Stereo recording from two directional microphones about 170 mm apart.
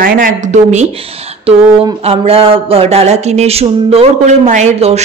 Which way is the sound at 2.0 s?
35° right (ahead or behind).